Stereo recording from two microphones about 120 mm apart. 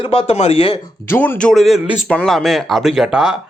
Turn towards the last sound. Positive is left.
turn(degrees=-5)  # may be behind; listen again after turning